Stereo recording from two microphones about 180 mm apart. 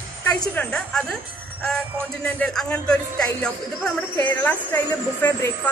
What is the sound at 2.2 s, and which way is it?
Speech, 5° left (ahead or behind).